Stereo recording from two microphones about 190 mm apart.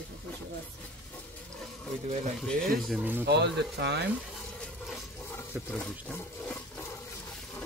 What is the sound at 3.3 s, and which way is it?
Speech, 60° right (ahead or behind).